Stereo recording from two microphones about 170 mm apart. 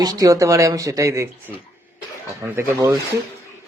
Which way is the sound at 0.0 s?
20° right (ahead or behind).